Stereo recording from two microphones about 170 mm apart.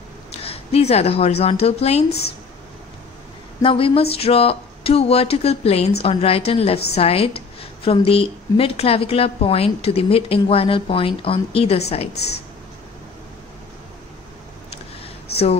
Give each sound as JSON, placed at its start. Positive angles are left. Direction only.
{"t": 0.4, "sound": "a woman's voice", "side_deg": 35}
{"t": 2.0, "sound": "a woman's voice", "side_deg": 70}
{"t": 3.6, "sound": "a woman's voice", "side_deg": 30}